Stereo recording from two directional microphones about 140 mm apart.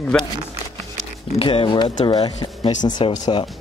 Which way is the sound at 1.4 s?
40° left (ahead or behind).